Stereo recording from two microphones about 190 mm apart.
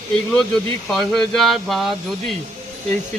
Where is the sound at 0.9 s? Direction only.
Centre (ahead or behind).